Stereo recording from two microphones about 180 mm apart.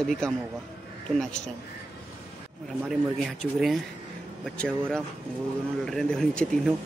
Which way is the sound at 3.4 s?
Centre (ahead or behind).